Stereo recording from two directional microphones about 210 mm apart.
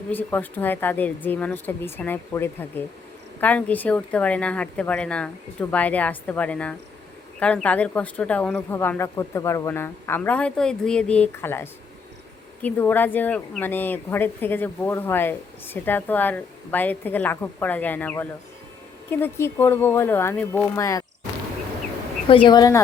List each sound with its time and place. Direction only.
0.1 s speech: 10° left (ahead or behind)
22.4 s speech: 20° left (ahead or behind)